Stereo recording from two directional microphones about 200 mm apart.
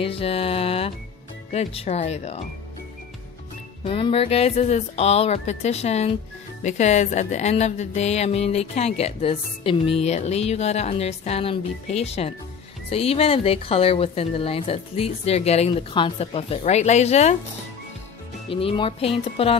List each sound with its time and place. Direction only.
0.0 s music: 30° left (ahead or behind)
1.5 s speech: 30° left (ahead or behind)
3.8 s speech: 25° left (ahead or behind)
18.5 s speech: 25° left (ahead or behind)